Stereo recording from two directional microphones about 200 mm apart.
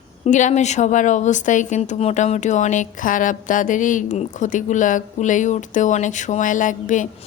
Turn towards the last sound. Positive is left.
turn(degrees=40)  # may be behind; listen again after turning